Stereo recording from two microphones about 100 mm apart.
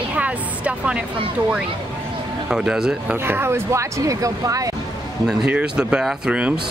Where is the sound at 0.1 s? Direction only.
15° right (ahead or behind).